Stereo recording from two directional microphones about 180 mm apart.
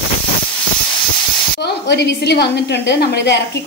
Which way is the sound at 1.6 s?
70° left (ahead or behind).